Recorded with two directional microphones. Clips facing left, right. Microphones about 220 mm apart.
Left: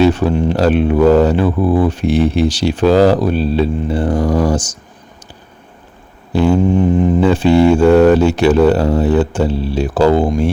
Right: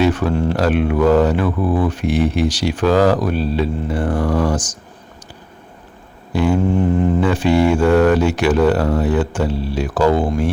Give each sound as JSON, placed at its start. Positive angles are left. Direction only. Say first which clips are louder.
{"t": 0.0, "sound": "speech", "louder": "left 4 dB", "side_deg": 30}
{"t": 6.3, "sound": "speech", "louder": "left 4 dB", "side_deg": 30}
{"t": 6.6, "sound": "a sound", "louder": "left 4 dB", "side_deg": 15}
{"t": 7.2, "sound": "speech", "louder": "left 6 dB", "side_deg": 25}